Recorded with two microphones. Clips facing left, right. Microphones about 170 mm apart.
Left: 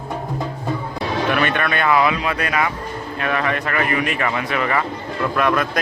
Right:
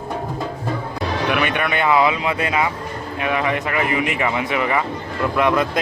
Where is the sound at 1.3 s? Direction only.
15° right (ahead or behind).